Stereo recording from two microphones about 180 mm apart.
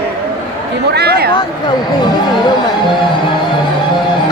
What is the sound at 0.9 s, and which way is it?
Speech, 60° right (ahead or behind).